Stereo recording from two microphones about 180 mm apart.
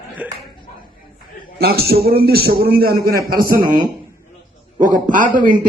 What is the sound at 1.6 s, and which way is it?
A man's voice, 60° right (ahead or behind).